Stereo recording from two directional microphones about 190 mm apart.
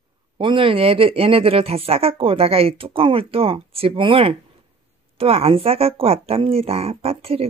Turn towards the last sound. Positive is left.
turn(degrees=-30)  # may be behind; listen again after turning